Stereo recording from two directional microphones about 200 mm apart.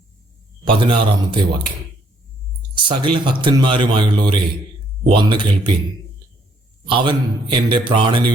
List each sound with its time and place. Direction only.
0.6 s speech: 25° right (ahead or behind)
2.7 s speech: 25° right (ahead or behind)
6.8 s speech: 25° right (ahead or behind)